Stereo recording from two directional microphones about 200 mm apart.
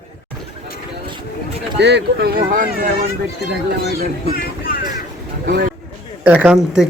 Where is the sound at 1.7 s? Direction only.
60° right (ahead or behind).